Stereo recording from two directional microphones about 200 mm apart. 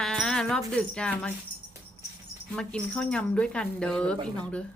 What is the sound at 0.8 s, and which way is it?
Speech, 5° left (ahead or behind).